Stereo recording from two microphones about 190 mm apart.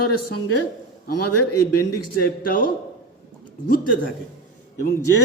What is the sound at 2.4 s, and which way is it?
Speech, 50° left (ahead or behind).